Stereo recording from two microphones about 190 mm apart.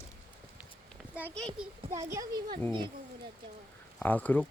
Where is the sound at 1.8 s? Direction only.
15° right (ahead or behind).